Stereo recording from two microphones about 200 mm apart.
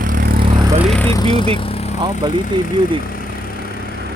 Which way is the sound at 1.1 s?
20° left (ahead or behind).